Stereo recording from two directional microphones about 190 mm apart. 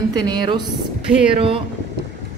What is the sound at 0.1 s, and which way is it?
A woman's voice, 20° right (ahead or behind).